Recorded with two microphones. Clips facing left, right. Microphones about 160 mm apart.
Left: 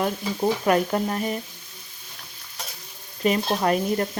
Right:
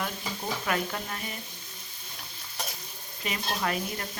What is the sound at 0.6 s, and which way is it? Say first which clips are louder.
Speech: left 8 dB; 40° left (ahead or behind).